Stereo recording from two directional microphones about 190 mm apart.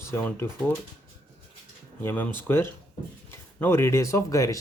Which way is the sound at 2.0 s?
10° left (ahead or behind).